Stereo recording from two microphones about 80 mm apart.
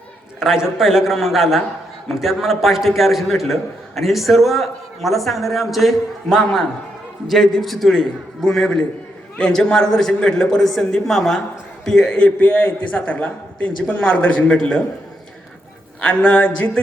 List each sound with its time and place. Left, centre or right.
0.3 s a man's voice: centre; by 14.5 s left
14.5 s a man's voice: centre
16.0 s a man's voice: centre